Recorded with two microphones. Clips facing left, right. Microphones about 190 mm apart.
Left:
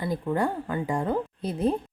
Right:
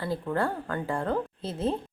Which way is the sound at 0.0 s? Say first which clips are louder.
Left 2 dB; 15° left (ahead or behind).